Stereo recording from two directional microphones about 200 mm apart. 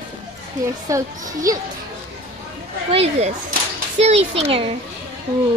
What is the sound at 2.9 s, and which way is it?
A child's voice, 30° right (ahead or behind).